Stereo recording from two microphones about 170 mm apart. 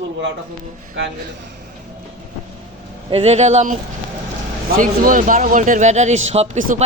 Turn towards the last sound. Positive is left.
turn(degrees=-40)  # may be behind; listen again after turning